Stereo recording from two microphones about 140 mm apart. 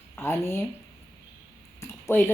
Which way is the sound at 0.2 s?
20° left (ahead or behind).